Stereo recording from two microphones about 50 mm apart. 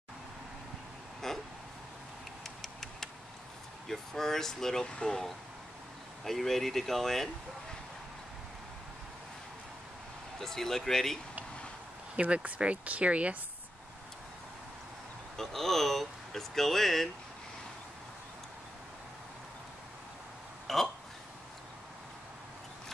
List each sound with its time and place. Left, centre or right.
1.2 s a sound: centre
2.4 s tick-tock: centre
3.8 s speech: centre
10.4 s speech: centre
12.4 s speech: right
15.3 s speech: centre
20.6 s hiccup: centre